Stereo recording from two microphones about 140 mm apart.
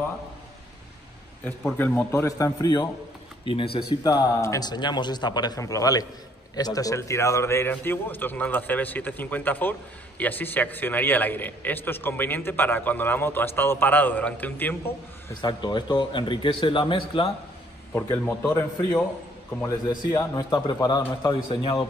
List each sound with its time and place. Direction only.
1.4 s speech: centre (ahead or behind)
1.8 s a man's voice: 15° left (ahead or behind); by 3.8 s 40° left (ahead or behind)
4.0 s a man's voice: 25° left (ahead or behind)
15.4 s speech: 30° left (ahead or behind)
17.9 s a man's voice: 15° left (ahead or behind)
19.9 s a man's voice: 30° left (ahead or behind)